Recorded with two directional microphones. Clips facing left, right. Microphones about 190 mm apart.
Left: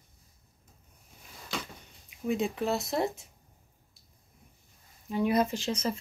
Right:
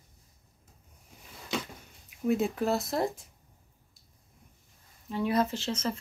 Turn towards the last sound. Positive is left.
turn(degrees=15)  # may be behind; listen again after turning